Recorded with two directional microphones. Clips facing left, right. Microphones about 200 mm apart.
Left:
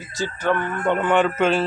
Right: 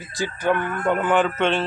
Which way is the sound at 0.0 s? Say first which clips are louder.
Even; 15° right (ahead or behind).